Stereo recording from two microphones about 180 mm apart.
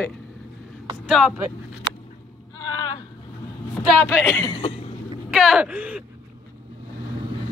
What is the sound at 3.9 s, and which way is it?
Speech, 10° left (ahead or behind).